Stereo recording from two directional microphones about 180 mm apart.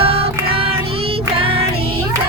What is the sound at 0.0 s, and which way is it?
Child singing, 30° right (ahead or behind).